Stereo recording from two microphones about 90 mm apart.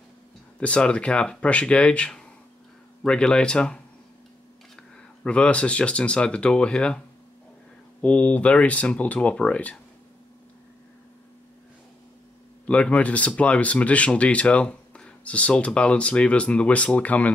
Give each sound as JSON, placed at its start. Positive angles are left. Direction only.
{"t": 0.6, "sound": "speech", "side_deg": 10}
{"t": 5.2, "sound": "speech", "side_deg": 10}
{"t": 8.0, "sound": "speech", "side_deg": 15}
{"t": 12.6, "sound": "speech", "side_deg": 15}